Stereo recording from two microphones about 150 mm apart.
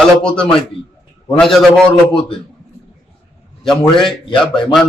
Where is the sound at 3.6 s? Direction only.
Centre (ahead or behind).